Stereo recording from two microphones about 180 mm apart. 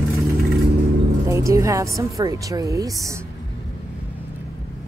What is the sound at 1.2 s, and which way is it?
Speech, 15° right (ahead or behind).